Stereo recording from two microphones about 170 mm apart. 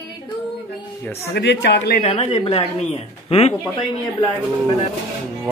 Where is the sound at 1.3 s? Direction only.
90° left; by 2.0 s 75° left (ahead or behind).